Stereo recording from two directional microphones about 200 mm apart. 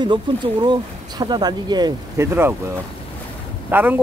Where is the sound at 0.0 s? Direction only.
20° right (ahead or behind).